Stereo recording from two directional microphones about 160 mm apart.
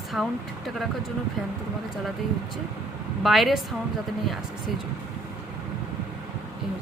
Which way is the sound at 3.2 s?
Centre (ahead or behind).